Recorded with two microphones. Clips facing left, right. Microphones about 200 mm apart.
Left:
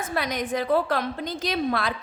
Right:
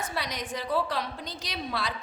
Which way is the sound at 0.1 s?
50° left (ahead or behind).